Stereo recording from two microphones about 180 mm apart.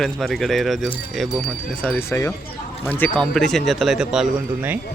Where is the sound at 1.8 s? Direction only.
10° left (ahead or behind); by 4.7 s 5° right (ahead or behind).